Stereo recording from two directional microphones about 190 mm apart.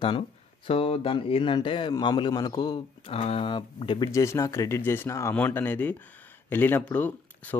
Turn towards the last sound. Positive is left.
turn(degrees=10)  # may be behind; listen again after turning